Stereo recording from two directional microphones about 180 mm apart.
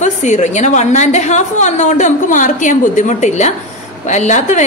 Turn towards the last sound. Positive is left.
turn(degrees=40)  # may be behind; listen again after turning